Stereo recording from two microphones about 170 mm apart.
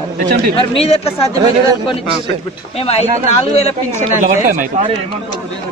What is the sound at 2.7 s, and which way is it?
Speech, 35° left (ahead or behind).